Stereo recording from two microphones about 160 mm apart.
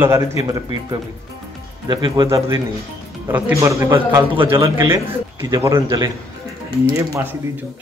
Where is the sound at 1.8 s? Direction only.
25° right (ahead or behind).